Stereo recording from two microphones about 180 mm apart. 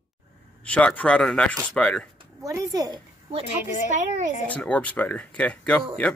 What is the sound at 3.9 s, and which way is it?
Speech, 45° right (ahead or behind).